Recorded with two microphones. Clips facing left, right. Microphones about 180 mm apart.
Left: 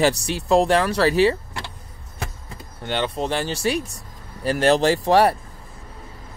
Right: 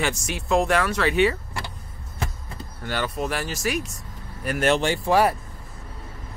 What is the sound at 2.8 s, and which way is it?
Speech, 25° left (ahead or behind).